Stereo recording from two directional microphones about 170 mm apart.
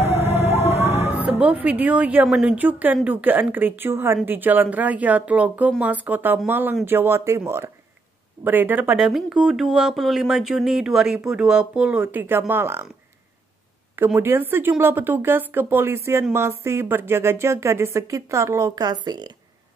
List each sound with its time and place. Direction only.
0.3 s vehicle: 40° right (ahead or behind)
0.9 s speech: 10° right (ahead or behind)
13.9 s speech: 15° right (ahead or behind)